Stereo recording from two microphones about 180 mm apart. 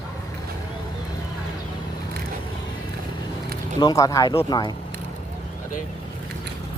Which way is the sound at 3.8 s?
20° left (ahead or behind).